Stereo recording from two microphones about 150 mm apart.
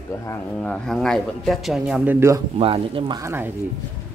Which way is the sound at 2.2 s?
20° right (ahead or behind).